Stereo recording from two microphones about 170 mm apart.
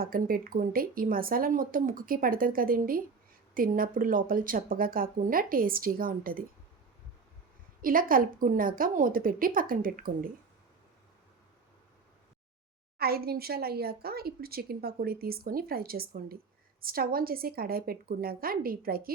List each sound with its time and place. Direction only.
0.0 s speech: 60° right (ahead or behind)
7.8 s speech: 55° right (ahead or behind)
13.0 s speech: 65° right (ahead or behind)